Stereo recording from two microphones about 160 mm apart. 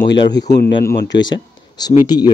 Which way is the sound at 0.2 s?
25° left (ahead or behind).